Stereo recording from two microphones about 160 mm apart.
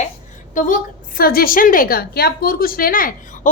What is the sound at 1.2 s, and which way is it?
A woman's voice, 70° left (ahead or behind).